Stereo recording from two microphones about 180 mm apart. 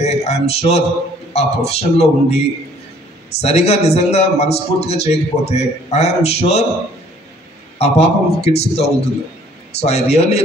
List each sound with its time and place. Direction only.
0.0 s a sound: 35° left (ahead or behind)
1.3 s a man's voice: 35° left (ahead or behind)
3.3 s a man's voice: 35° left (ahead or behind)
7.8 s a man's voice: 35° left (ahead or behind)